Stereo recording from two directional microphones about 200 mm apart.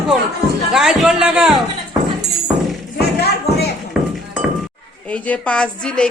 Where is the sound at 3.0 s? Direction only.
55° left (ahead or behind).